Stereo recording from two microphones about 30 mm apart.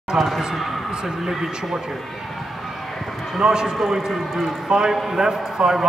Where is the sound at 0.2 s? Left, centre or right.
Centre.